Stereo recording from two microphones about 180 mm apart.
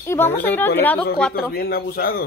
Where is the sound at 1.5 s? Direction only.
60° left (ahead or behind).